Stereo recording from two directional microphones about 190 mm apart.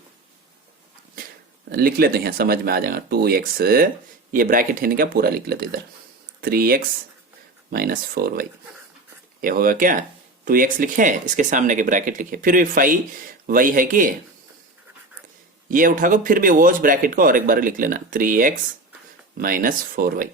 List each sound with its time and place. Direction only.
1.7 s speech: 50° right (ahead or behind)
15.7 s speech: 45° right (ahead or behind)